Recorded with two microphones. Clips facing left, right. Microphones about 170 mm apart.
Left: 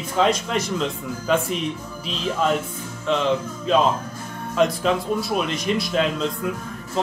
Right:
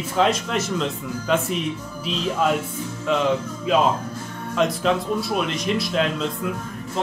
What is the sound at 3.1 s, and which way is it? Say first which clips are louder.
Speech: even; 5° right (ahead or behind).